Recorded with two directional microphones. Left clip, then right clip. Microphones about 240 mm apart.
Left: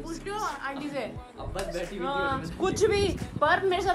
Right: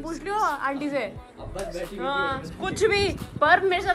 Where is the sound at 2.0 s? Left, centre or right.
Centre.